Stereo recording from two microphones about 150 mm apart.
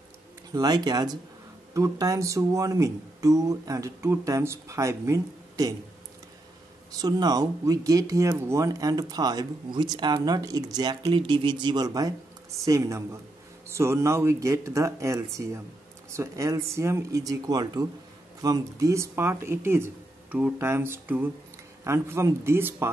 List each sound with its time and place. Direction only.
0.5 s speech: 25° right (ahead or behind)
7.0 s speech: 25° right (ahead or behind)